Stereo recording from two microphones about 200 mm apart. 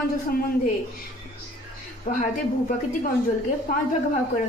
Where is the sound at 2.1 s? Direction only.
45° left (ahead or behind).